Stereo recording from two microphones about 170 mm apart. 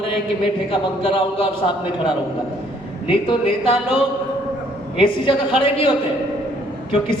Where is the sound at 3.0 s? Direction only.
30° left (ahead or behind).